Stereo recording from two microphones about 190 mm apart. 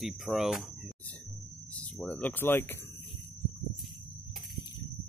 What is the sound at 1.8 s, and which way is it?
Speech, 5° left (ahead or behind).